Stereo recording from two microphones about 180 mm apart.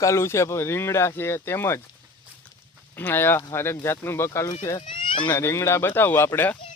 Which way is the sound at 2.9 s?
10° left (ahead or behind).